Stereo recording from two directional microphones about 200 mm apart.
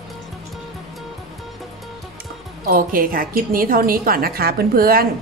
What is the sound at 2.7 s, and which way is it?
A woman's voice, 45° right (ahead or behind).